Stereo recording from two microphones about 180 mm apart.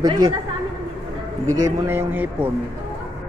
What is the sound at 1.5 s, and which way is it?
Speech, 15° right (ahead or behind).